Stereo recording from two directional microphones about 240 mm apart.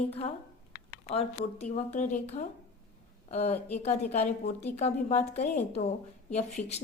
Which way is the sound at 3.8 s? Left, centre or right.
Left.